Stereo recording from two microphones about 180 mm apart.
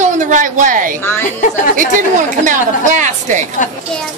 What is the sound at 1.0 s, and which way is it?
Speech, 10° left (ahead or behind).